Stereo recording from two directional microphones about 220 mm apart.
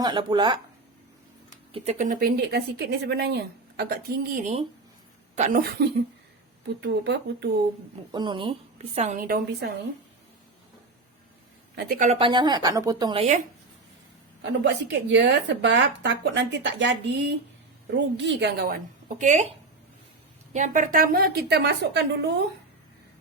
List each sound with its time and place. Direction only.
0.0 s a woman's voice: 20° right (ahead or behind); by 7.4 s 50° right (ahead or behind)
8.1 s a woman's voice: 20° right (ahead or behind); by 9.7 s 40° right (ahead or behind)
11.7 s speech: 45° right (ahead or behind)
12.0 s a woman's voice: 25° right (ahead or behind)
14.4 s speech: 55° right (ahead or behind); by 19.5 s 35° right (ahead or behind)
20.5 s speech: 35° right (ahead or behind)